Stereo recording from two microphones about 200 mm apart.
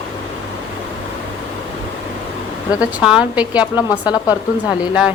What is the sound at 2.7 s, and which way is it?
Speech, 5° right (ahead or behind).